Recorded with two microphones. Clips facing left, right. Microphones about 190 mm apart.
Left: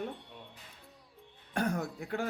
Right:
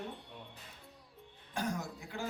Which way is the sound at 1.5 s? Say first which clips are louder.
Left 5 dB; 60° left (ahead or behind).